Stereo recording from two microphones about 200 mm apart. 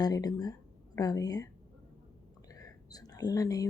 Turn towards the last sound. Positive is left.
turn(degrees=20)  # may be behind; listen again after turning